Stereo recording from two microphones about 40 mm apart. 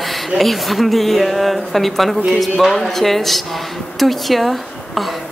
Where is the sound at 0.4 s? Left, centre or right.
Centre.